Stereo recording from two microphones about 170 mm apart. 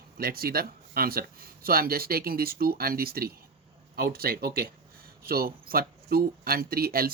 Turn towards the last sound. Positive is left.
turn(degrees=-60)  # may be behind; listen again after turning